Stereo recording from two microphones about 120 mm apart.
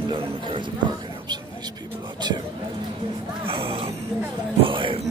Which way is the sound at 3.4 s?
50° right (ahead or behind).